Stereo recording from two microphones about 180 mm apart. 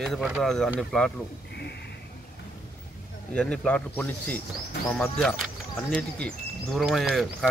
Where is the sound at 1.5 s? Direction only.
65° left (ahead or behind).